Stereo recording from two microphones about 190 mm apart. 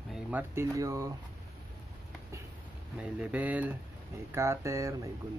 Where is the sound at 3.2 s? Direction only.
5° right (ahead or behind).